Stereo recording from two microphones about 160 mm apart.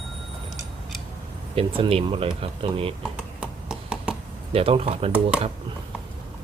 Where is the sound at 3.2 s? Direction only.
5° right (ahead or behind).